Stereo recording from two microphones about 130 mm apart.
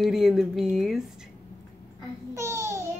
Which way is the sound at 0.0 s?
Centre (ahead or behind).